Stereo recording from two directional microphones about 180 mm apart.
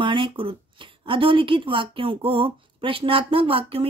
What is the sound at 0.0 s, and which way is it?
Speech, 25° right (ahead or behind).